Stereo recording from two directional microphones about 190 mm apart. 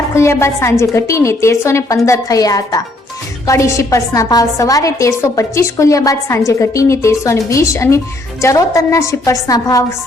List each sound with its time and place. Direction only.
0.1 s a woman's voice: 15° left (ahead or behind)